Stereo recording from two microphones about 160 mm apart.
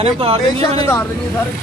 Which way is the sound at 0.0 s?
35° right (ahead or behind).